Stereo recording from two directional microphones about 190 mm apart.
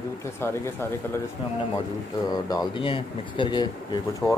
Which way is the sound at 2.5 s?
25° left (ahead or behind).